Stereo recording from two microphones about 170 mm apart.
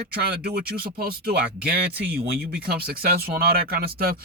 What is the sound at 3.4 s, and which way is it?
Speech, 65° right (ahead or behind).